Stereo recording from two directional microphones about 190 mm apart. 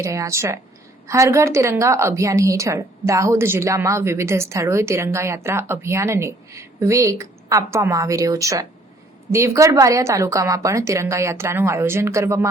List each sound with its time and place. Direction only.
0.0 s a woman's voice: 15° right (ahead or behind)